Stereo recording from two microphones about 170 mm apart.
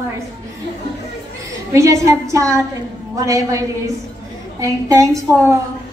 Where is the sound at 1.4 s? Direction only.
20° right (ahead or behind).